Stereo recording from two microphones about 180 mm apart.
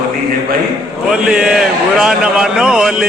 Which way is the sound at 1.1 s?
5° right (ahead or behind).